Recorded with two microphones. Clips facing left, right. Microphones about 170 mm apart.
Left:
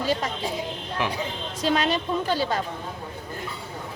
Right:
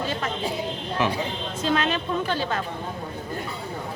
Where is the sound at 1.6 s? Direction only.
35° left (ahead or behind).